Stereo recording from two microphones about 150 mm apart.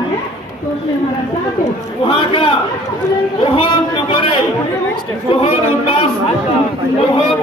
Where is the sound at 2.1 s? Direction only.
35° left (ahead or behind).